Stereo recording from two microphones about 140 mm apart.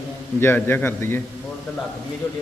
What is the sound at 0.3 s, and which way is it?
Speech, 15° left (ahead or behind).